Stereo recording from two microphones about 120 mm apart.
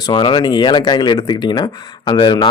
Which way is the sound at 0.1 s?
40° left (ahead or behind).